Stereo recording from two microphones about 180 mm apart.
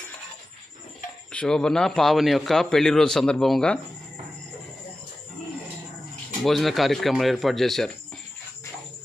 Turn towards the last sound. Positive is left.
turn(degrees=0)  # may be behind; listen again after turning